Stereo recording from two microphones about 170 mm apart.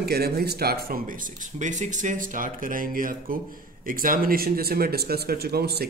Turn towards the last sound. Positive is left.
turn(degrees=-70)  # may be behind; listen again after turning